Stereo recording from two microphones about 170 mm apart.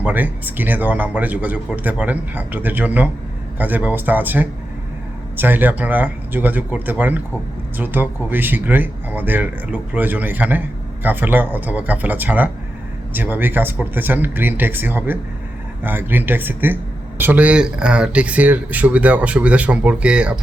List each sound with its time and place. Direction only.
0.0 s speech: 10° right (ahead or behind)